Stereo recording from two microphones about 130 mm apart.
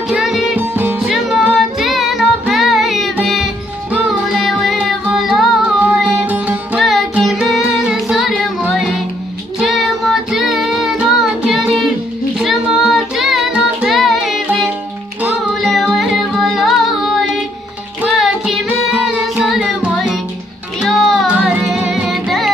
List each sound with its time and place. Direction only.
0.1 s music: centre (ahead or behind)
0.6 s music: 15° right (ahead or behind)
1.0 s music: centre (ahead or behind)
6.2 s music: 10° right (ahead or behind)
6.8 s music: centre (ahead or behind)
9.6 s child singing: centre (ahead or behind)
12.4 s music: 5° right (ahead or behind)